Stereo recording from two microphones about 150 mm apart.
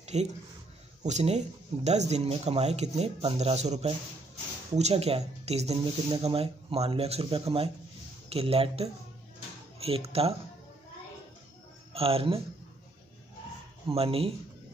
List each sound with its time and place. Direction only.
0.0 s a sound: 45° right (ahead or behind)
1.0 s speech: 50° right (ahead or behind)
11.9 s speech: 40° right (ahead or behind)
13.8 s speech: 40° right (ahead or behind)